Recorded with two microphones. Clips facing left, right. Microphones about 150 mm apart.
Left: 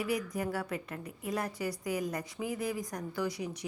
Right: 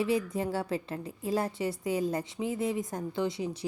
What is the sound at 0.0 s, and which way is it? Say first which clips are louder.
A woman's voice: right 4 dB; 25° right (ahead or behind).